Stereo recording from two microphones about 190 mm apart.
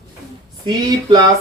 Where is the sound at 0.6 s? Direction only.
20° right (ahead or behind).